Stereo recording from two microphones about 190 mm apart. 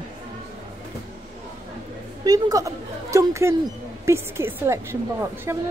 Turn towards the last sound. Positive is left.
turn(degrees=-15)  # may be behind; listen again after turning